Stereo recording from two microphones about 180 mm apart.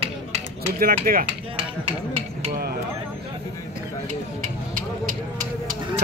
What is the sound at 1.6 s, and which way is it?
Music, 30° right (ahead or behind).